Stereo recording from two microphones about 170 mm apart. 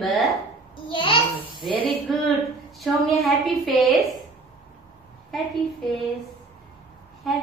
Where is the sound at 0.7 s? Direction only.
30° left (ahead or behind).